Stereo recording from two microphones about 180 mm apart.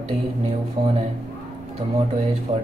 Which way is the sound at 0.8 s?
25° right (ahead or behind).